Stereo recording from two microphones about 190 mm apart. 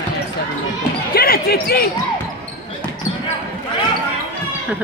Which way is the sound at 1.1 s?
55° left (ahead or behind).